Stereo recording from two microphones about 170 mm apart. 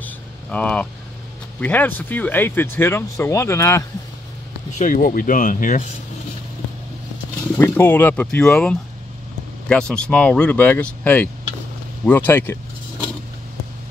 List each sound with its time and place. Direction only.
0.0 s vehicle: 10° left (ahead or behind)
1.6 s speech: 10° left (ahead or behind)
4.7 s speech: 50° left (ahead or behind)
7.5 s speech: 15° left (ahead or behind)